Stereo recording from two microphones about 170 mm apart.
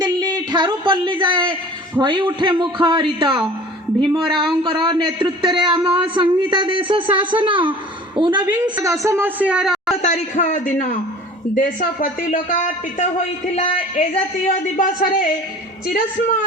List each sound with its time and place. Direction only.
0.0 s speech: 25° right (ahead or behind)
5.2 s a sound: 30° right (ahead or behind)
6.1 s a woman's voice: 30° right (ahead or behind); by 10.0 s centre (ahead or behind)
10.0 s a man's voice: 40° left (ahead or behind)